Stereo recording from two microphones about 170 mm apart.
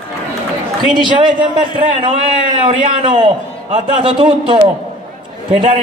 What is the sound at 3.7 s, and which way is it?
Speech, 30° right (ahead or behind).